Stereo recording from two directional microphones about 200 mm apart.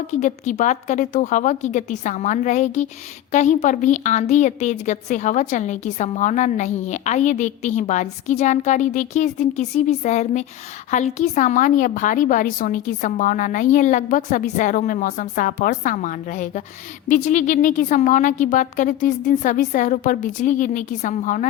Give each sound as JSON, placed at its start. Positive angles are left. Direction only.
{"t": 0.1, "sound": "a woman's voice", "side_deg": 35}